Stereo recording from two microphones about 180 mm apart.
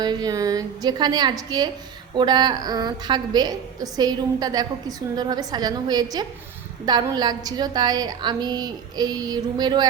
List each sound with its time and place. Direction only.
0.0 s a woman's voice: 20° right (ahead or behind)